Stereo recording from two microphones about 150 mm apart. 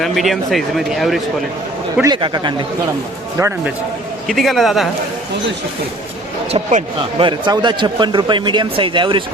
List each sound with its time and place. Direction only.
0.0 s speech: centre (ahead or behind)
2.0 s speech: 30° right (ahead or behind)
4.3 s speech: centre (ahead or behind)
6.5 s speech: 50° right (ahead or behind)
7.2 s speech: 30° right (ahead or behind)